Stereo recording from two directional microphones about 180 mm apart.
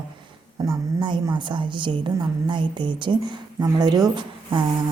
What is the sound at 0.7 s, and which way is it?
A woman's voice, 25° right (ahead or behind).